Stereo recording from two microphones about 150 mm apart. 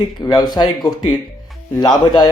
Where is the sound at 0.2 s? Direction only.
25° left (ahead or behind).